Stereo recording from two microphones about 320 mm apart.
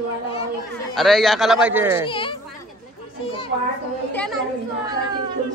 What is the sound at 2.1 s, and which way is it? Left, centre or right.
Speech, centre.